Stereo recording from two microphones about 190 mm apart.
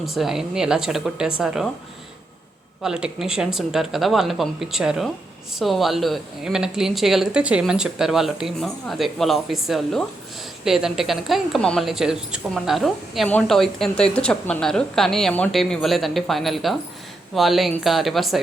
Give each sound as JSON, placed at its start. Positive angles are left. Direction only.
{"t": 0.0, "sound": "speech", "side_deg": 0}
{"t": 2.8, "sound": "speech", "side_deg": -5}